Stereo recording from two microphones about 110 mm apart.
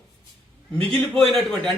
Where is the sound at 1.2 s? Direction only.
5° left (ahead or behind).